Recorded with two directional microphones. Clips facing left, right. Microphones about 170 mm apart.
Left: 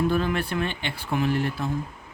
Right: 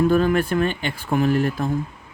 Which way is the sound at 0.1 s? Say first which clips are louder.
Right 7 dB; 45° right (ahead or behind).